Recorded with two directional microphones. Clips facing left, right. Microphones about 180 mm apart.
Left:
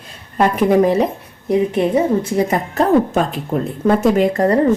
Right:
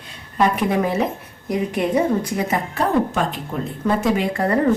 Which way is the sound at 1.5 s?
25° left (ahead or behind).